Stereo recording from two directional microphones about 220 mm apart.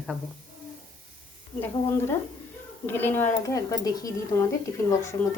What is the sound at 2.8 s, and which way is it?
A woman's voice, 10° left (ahead or behind).